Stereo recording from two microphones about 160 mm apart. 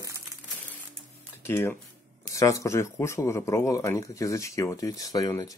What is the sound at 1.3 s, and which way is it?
Music, 15° left (ahead or behind).